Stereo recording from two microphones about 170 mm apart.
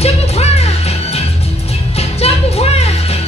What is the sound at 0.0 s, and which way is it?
Music, 40° left (ahead or behind).